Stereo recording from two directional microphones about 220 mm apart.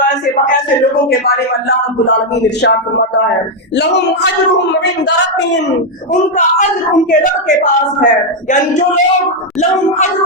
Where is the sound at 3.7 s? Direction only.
50° left (ahead or behind).